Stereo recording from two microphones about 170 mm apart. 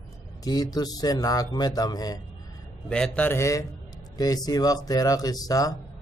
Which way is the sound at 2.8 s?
5° left (ahead or behind).